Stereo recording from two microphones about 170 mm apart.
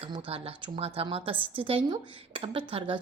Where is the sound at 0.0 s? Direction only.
30° right (ahead or behind).